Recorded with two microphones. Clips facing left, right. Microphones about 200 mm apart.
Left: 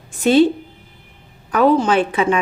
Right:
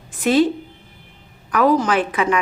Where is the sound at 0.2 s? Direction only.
30° left (ahead or behind).